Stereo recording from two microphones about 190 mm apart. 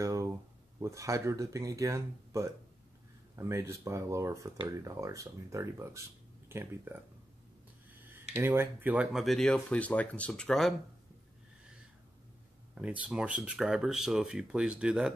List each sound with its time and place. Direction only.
0.0 s a sound: 15° right (ahead or behind)
0.7 s speech: 15° right (ahead or behind)
8.4 s speech: 10° right (ahead or behind)
12.7 s speech: 5° right (ahead or behind)